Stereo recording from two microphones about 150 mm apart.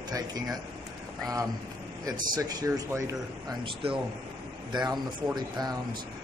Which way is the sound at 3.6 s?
40° right (ahead or behind).